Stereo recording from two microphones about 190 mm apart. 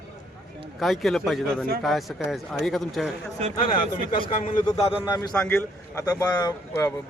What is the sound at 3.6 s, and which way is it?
A man's voice, 25° left (ahead or behind).